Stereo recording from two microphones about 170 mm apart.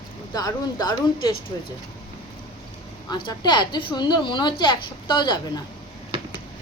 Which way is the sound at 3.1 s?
25° left (ahead or behind).